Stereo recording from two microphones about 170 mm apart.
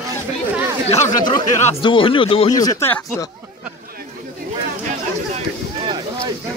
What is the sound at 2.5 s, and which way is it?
Speech, 20° left (ahead or behind).